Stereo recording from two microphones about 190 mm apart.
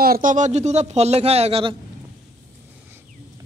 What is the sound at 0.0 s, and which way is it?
A man's voice, 50° right (ahead or behind).